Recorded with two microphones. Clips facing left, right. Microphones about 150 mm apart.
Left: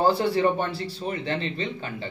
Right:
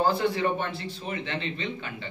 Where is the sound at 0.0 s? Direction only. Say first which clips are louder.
Left 3 dB; 35° left (ahead or behind).